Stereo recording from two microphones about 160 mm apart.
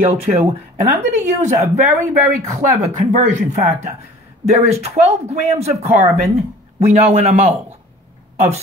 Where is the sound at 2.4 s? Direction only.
45° right (ahead or behind).